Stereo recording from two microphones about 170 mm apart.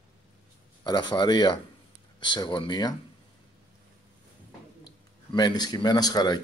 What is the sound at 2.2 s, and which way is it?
Speech, 25° left (ahead or behind).